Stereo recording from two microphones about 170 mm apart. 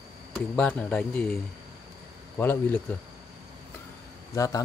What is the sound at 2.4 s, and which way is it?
Speech, 10° left (ahead or behind).